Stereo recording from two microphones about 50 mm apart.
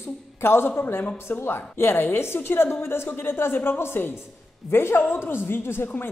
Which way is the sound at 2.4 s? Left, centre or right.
Left.